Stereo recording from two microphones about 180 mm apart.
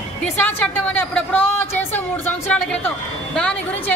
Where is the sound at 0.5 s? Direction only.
10° left (ahead or behind).